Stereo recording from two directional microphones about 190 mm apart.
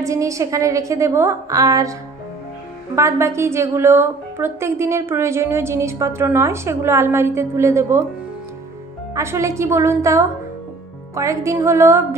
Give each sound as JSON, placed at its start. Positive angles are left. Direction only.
{"t": 0.0, "sound": "a woman's voice", "side_deg": -15}
{"t": 3.0, "sound": "a woman's voice", "side_deg": -15}
{"t": 9.1, "sound": "a woman's voice", "side_deg": -15}